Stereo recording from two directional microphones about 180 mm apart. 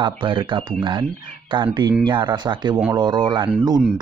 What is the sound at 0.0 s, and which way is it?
Speech, 25° right (ahead or behind).